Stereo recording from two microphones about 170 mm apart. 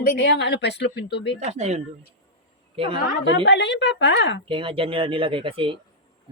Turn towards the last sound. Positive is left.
turn(degrees=-30)  # may be behind; listen again after turning